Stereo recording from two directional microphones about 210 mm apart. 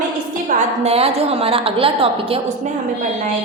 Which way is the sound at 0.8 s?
30° right (ahead or behind).